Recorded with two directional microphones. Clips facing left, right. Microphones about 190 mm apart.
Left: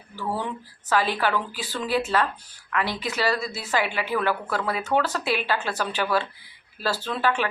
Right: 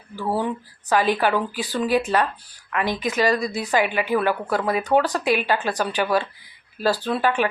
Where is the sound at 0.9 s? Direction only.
15° right (ahead or behind).